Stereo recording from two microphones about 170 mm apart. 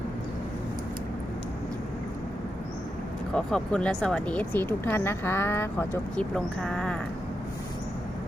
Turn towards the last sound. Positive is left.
turn(degrees=5)  # may be behind; listen again after turning